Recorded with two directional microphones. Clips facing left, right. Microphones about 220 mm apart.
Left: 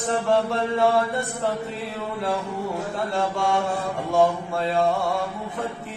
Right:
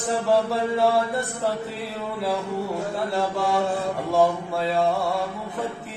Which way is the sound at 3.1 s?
Centre (ahead or behind).